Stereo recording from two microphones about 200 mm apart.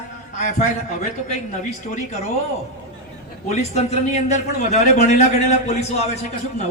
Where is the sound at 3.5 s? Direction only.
35° left (ahead or behind).